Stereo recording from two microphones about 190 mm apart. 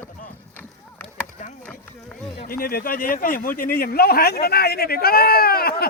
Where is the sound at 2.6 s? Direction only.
50° left (ahead or behind).